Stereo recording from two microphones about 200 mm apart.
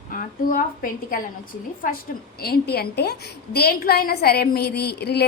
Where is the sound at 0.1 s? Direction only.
45° left (ahead or behind).